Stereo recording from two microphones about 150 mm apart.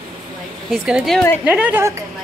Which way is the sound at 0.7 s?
5° right (ahead or behind).